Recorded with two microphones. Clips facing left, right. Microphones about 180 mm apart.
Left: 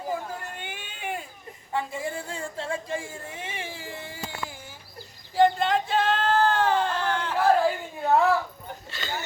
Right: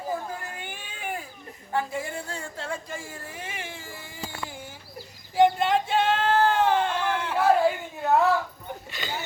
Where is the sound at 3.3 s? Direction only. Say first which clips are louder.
Left 1 dB; 30° left (ahead or behind).